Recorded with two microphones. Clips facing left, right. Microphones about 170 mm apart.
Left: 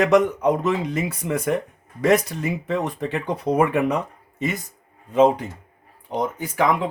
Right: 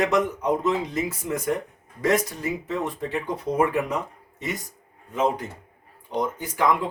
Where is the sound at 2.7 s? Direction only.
75° left (ahead or behind).